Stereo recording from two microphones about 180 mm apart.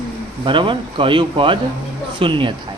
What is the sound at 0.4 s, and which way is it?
A man's voice, 25° right (ahead or behind).